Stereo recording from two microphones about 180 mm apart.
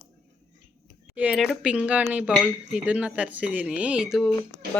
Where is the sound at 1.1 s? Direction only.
5° right (ahead or behind).